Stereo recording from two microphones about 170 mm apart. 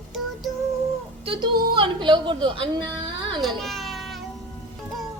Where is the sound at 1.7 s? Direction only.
30° right (ahead or behind).